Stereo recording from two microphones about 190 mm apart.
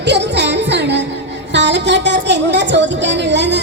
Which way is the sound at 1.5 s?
65° right (ahead or behind).